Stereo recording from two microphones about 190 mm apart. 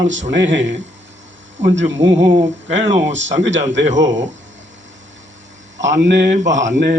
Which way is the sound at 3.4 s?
75° right (ahead or behind).